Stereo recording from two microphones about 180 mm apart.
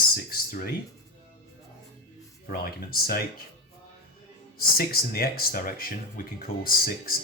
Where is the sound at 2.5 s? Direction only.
55° left (ahead or behind).